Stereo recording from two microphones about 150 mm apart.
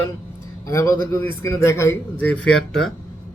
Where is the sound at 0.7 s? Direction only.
20° left (ahead or behind).